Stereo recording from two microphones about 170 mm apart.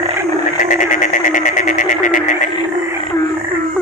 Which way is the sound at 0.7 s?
50° left (ahead or behind).